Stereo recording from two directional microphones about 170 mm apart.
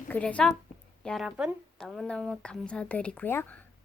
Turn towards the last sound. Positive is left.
turn(degrees=10)  # may be behind; listen again after turning